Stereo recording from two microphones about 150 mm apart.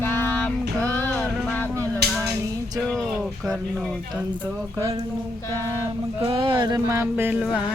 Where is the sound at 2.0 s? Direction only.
90° right.